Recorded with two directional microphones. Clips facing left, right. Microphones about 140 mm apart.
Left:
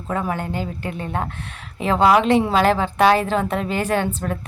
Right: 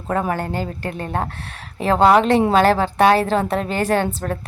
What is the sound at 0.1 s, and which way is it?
Speech, 50° right (ahead or behind).